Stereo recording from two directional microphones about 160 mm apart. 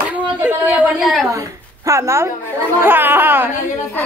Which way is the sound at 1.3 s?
20° right (ahead or behind).